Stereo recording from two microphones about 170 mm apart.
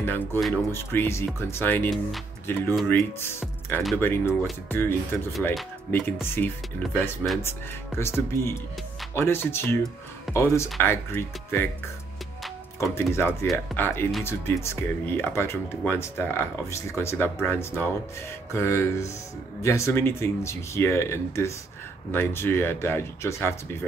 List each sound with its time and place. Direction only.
0.0 s speech: 10° left (ahead or behind)
1.9 s speech: centre (ahead or behind)
2.4 s speech: 15° left (ahead or behind)
12.9 s speech: 15° left (ahead or behind)